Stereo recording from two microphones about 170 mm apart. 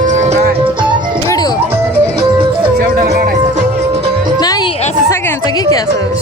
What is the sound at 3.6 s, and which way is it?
Music, 40° right (ahead or behind).